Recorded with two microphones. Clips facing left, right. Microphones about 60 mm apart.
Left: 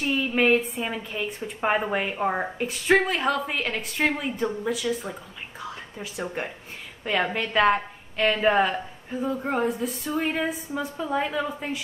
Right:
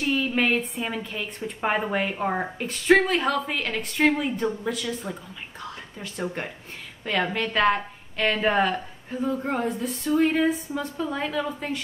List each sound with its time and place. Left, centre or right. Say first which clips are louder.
0.0 s a woman's voice: left 1 dB; centre